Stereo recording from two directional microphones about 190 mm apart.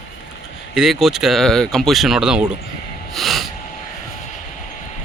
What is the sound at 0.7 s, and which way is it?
Speech, centre (ahead or behind).